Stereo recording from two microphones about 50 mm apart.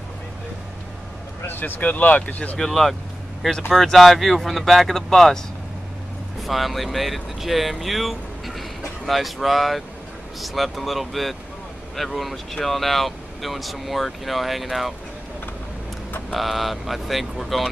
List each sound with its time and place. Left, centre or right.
1.4 s speech: left
2.6 s speech: centre
6.4 s speech: centre
16.3 s speech: centre